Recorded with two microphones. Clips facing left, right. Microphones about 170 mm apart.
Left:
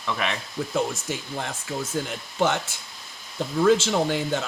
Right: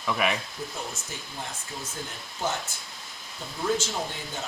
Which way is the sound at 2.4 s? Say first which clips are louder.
Left 8 dB; 80° left.